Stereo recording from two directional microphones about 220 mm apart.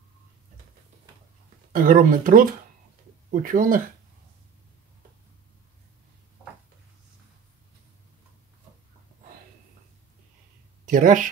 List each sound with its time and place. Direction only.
1.7 s speech: 40° right (ahead or behind)
10.9 s speech: 35° right (ahead or behind)